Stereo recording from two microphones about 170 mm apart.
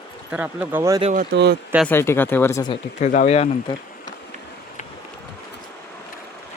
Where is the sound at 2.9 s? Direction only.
45° left (ahead or behind).